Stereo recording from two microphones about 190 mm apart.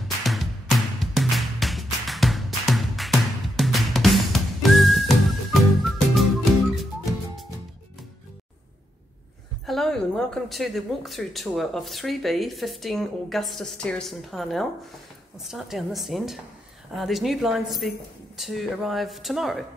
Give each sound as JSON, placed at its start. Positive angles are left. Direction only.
{"t": 0.2, "sound": "music", "side_deg": 0}
{"t": 9.7, "sound": "speech", "side_deg": 0}